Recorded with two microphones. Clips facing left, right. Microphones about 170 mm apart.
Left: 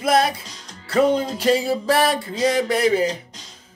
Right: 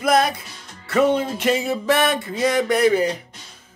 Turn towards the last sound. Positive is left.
turn(degrees=30)  # may be behind; listen again after turning